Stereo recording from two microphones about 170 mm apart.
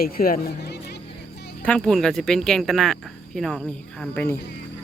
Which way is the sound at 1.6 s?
5° left (ahead or behind).